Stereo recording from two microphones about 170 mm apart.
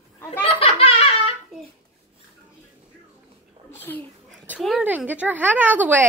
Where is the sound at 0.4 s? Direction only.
35° left (ahead or behind).